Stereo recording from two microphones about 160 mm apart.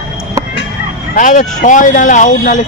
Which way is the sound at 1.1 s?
50° left (ahead or behind).